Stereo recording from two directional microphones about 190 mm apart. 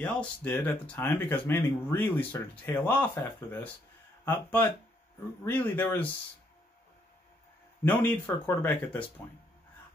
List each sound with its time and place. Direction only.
0.0 s speech: 10° left (ahead or behind)
7.8 s speech: 10° left (ahead or behind)